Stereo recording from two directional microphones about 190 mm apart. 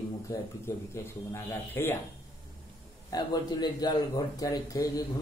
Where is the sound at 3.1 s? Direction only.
20° left (ahead or behind).